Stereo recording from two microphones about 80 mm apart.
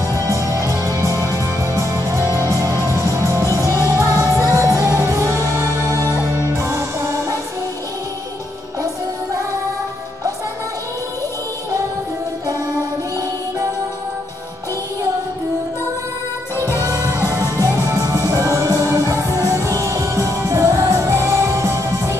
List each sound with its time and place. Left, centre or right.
0.1 s music: right
2.9 s music: right
16.6 s music: left
16.9 s music: right